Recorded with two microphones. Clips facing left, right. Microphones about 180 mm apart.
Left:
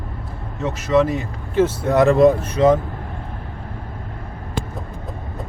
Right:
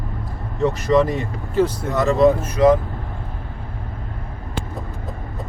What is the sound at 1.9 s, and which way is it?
Speech, 60° left (ahead or behind).